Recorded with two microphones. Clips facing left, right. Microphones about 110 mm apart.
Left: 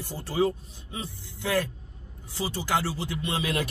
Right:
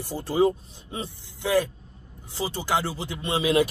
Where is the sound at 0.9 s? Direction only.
35° right (ahead or behind).